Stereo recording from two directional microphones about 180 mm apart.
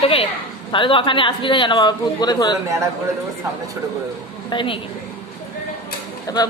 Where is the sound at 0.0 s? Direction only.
30° left (ahead or behind).